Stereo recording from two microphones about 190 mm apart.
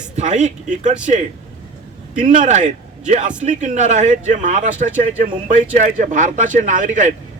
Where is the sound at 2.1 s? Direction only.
40° right (ahead or behind).